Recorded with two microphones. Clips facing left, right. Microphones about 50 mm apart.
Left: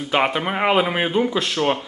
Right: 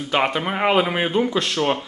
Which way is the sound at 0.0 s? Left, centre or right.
Centre.